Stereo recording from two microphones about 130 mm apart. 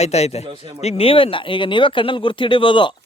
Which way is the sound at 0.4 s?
45° right (ahead or behind).